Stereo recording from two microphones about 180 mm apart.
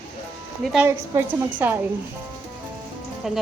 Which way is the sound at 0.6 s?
Centre (ahead or behind).